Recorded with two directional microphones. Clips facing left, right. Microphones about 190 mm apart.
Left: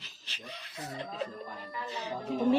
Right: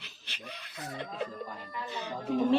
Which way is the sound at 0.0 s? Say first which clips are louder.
Right 1 dB; 60° right (ahead or behind).